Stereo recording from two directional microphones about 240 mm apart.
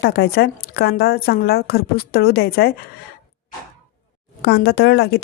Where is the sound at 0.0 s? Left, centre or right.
Left.